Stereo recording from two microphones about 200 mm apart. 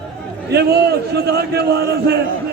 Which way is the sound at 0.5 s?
55° right (ahead or behind).